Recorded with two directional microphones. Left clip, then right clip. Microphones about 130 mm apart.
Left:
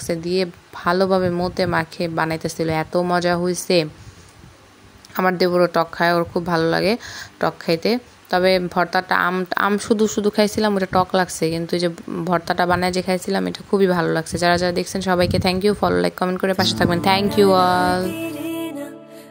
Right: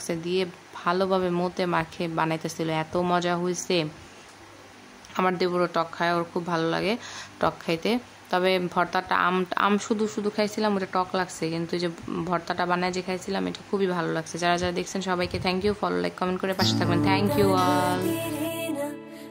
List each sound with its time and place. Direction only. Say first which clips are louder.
0.0 s a woman's voice: left 6 dB; 35° left (ahead or behind)
5.2 s a woman's voice: left 7 dB; 45° left (ahead or behind)